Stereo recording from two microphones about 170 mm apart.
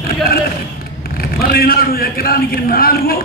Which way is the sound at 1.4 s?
60° left (ahead or behind).